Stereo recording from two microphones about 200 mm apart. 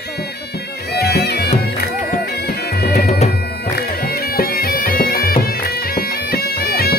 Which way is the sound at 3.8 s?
50° left (ahead or behind).